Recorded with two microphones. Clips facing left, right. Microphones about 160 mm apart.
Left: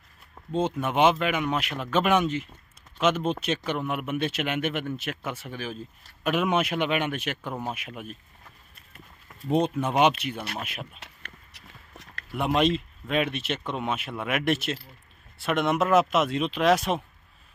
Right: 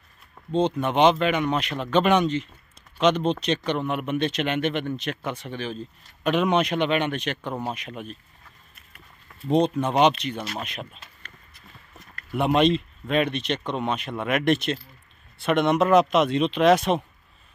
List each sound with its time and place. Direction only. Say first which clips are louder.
0.6 s a man's voice: right 3 dB; 5° left (ahead or behind)
9.5 s speech: right 3 dB; 10° left (ahead or behind)
11.0 s a sound: left 1 dB; 75° left (ahead or behind)
12.3 s a man's voice: right 4 dB; centre (ahead or behind)